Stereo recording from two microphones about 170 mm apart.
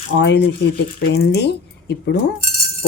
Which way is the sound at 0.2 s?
90° left.